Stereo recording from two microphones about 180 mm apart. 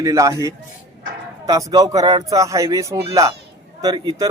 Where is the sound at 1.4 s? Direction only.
20° right (ahead or behind).